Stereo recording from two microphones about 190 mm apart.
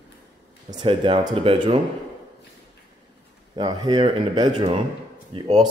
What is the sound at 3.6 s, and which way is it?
Speech, 20° right (ahead or behind).